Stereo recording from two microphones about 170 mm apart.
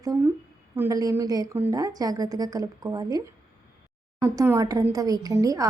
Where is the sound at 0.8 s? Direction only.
20° right (ahead or behind).